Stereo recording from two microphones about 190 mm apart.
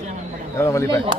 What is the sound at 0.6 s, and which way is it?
Speech, 15° left (ahead or behind).